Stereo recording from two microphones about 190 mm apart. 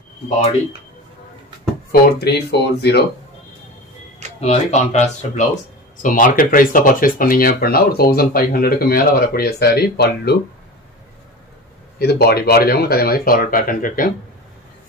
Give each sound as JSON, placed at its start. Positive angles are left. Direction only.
{"t": 1.9, "sound": "speech", "side_deg": 60}
{"t": 4.4, "sound": "speech", "side_deg": 35}
{"t": 12.0, "sound": "speech", "side_deg": 55}